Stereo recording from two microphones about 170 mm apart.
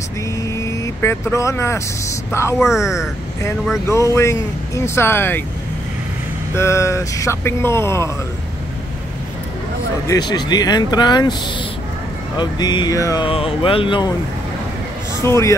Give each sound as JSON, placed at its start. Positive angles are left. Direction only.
{"t": 0.4, "sound": "vehicle", "side_deg": 20}
{"t": 2.6, "sound": "speech", "side_deg": -5}
{"t": 3.8, "sound": "speech", "side_deg": 15}
{"t": 6.5, "sound": "speech", "side_deg": 15}
{"t": 10.0, "sound": "speech", "side_deg": 25}
{"t": 12.4, "sound": "speech", "side_deg": 25}
{"t": 13.3, "sound": "speech", "side_deg": 35}
{"t": 15.2, "sound": "speech", "side_deg": 15}